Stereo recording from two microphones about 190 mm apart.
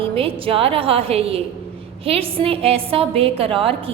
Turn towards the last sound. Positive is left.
turn(degrees=-30)  # may be behind; listen again after turning